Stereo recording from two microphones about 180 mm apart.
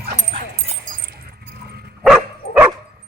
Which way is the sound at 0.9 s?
60° right (ahead or behind).